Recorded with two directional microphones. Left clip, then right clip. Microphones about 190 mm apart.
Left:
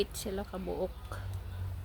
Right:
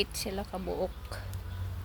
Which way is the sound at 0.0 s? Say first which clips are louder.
Right 2 dB; 15° left (ahead or behind).